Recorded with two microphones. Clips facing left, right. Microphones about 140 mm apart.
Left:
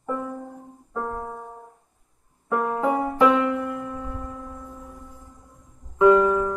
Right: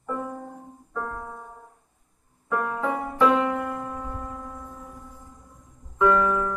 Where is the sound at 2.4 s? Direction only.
20° left (ahead or behind).